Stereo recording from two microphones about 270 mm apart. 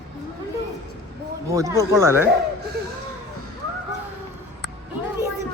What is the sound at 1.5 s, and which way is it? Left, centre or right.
Speech, centre.